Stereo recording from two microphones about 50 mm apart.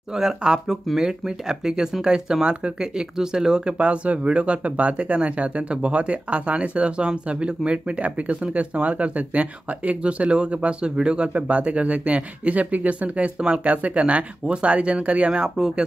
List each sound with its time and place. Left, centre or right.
0.1 s speech: centre
3.7 s speech: right
15.4 s speech: centre